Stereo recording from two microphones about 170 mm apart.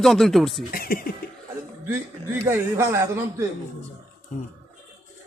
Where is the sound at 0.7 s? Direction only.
60° left (ahead or behind).